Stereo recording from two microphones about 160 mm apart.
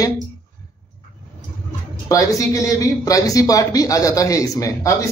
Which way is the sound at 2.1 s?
20° left (ahead or behind).